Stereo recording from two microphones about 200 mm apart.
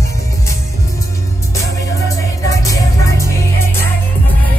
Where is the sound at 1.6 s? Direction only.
15° left (ahead or behind).